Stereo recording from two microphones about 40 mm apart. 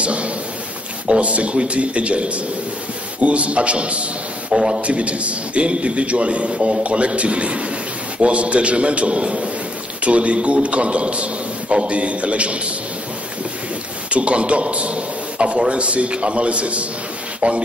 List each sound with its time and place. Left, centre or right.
0.0 s a sound: right
1.0 s a man's voice: right
14.1 s a man's voice: right